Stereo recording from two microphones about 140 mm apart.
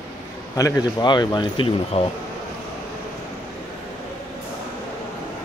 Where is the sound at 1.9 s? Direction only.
50° left (ahead or behind).